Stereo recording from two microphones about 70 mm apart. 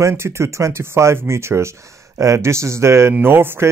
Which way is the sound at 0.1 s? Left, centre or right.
Right.